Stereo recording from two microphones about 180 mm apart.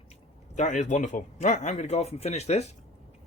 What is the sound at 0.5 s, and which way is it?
A man's voice, 40° left (ahead or behind).